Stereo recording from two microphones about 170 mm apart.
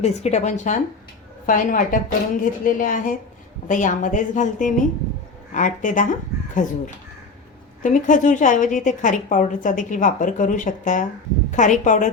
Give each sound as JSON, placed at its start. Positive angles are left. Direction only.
{"t": 0.0, "sound": "a woman's voice", "side_deg": 40}